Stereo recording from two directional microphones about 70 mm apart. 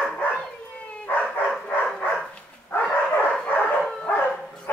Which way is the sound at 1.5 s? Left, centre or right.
Centre.